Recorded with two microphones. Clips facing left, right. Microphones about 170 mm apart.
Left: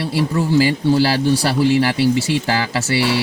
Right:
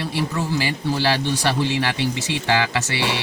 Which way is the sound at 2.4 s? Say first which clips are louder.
Left 2 dB; 35° left (ahead or behind).